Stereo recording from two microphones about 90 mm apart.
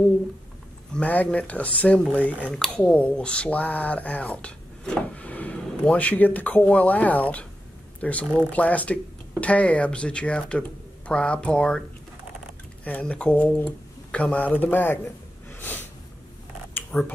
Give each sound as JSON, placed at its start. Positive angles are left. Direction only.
{"t": 0.9, "sound": "speech", "side_deg": 15}
{"t": 12.8, "sound": "speech", "side_deg": 15}
{"t": 15.6, "sound": "snort", "side_deg": 20}
{"t": 16.9, "sound": "speech", "side_deg": 25}